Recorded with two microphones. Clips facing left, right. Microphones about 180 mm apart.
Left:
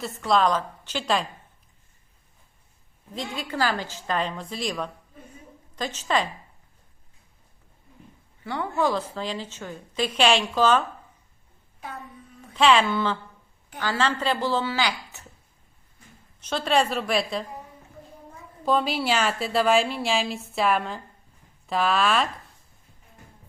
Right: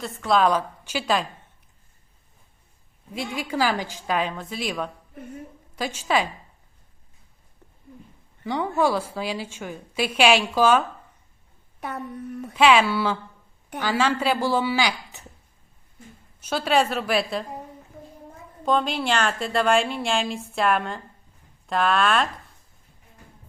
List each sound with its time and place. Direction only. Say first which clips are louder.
0.0 s a woman's voice: right 1 dB; centre (ahead or behind)
3.2 s a woman's voice: right 2 dB; 10° right (ahead or behind)
8.4 s a woman's voice: right 3 dB; 15° right (ahead or behind)
11.8 s a woman's voice: right 7 dB; 65° right (ahead or behind)
12.5 s a woman's voice: right 2 dB; 5° right (ahead or behind)
16.4 s a woman's voice: right 1 dB; 5° right (ahead or behind)
18.6 s a woman's voice: even; 5° left (ahead or behind)